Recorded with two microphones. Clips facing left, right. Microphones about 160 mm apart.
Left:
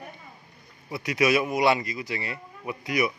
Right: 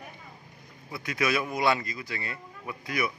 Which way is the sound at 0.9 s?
20° left (ahead or behind).